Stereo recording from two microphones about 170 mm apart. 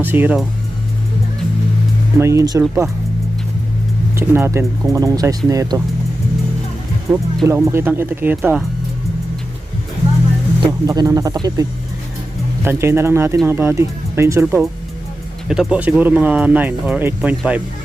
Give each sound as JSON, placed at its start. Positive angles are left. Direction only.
{"t": 0.0, "sound": "speech", "side_deg": -10}
{"t": 2.1, "sound": "speech", "side_deg": -20}
{"t": 4.1, "sound": "speech", "side_deg": -15}
{"t": 7.4, "sound": "speech", "side_deg": -15}
{"t": 10.6, "sound": "speech", "side_deg": -20}
{"t": 12.6, "sound": "speech", "side_deg": -15}
{"t": 15.4, "sound": "speech", "side_deg": -5}